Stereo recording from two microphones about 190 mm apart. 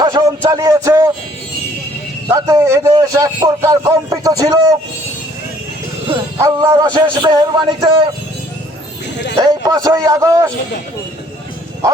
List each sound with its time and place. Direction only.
0.0 s a sound: 20° right (ahead or behind)
2.3 s a man's voice: 15° right (ahead or behind)
6.3 s a man's voice: 20° right (ahead or behind)
9.5 s a man's voice: 20° right (ahead or behind)